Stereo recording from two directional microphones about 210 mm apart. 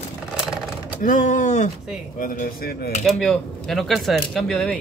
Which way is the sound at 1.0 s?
40° left (ahead or behind).